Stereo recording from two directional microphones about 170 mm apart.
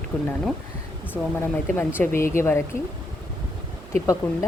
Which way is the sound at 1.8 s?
15° left (ahead or behind).